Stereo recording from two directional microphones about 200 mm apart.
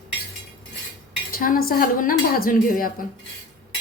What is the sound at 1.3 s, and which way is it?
A woman's voice, 45° left (ahead or behind).